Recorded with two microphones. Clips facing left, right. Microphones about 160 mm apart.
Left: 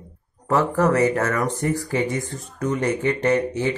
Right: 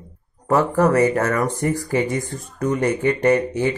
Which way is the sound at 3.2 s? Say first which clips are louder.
Right 4 dB; 15° right (ahead or behind).